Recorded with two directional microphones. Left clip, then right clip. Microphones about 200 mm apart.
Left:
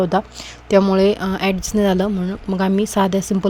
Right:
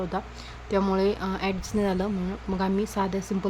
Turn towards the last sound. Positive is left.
turn(degrees=40)  # may be behind; listen again after turning